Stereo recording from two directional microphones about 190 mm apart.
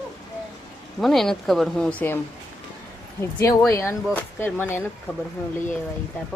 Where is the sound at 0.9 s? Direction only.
Centre (ahead or behind).